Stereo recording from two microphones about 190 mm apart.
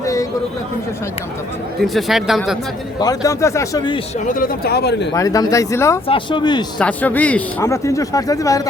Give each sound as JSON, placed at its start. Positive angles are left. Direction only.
{"t": 0.0, "sound": "a sound", "side_deg": 15}
{"t": 1.8, "sound": "speech", "side_deg": 0}
{"t": 3.0, "sound": "speech", "side_deg": 20}
{"t": 4.3, "sound": "speech", "side_deg": 50}
{"t": 5.1, "sound": "speech", "side_deg": 20}
{"t": 6.1, "sound": "speech", "side_deg": 25}
{"t": 6.7, "sound": "speech", "side_deg": 5}